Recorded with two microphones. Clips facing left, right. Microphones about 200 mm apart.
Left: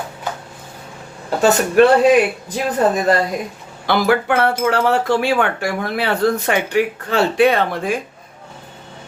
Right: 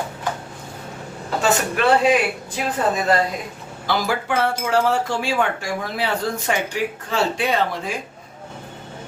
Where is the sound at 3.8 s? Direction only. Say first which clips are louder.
Left 6 dB; 60° left (ahead or behind).